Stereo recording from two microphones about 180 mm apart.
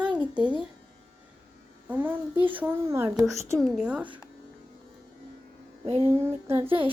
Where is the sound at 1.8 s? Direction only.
10° right (ahead or behind).